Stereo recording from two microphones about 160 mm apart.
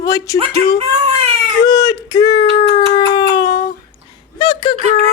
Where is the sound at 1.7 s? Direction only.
20° left (ahead or behind).